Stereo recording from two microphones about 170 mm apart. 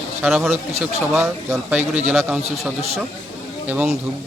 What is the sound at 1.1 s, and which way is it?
Speech, 15° right (ahead or behind).